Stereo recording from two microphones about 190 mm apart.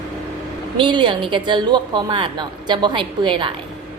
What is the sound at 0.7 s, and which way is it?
A woman's voice, 25° right (ahead or behind).